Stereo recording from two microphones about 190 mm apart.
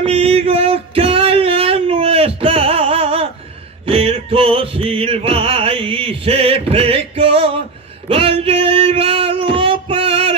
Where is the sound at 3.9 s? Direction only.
30° right (ahead or behind).